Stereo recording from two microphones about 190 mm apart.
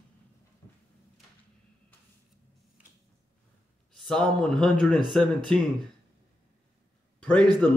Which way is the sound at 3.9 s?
Centre (ahead or behind).